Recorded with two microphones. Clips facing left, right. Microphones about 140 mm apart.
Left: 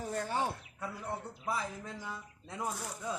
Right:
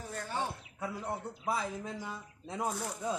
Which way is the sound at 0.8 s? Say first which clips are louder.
Right 4 dB; 20° right (ahead or behind).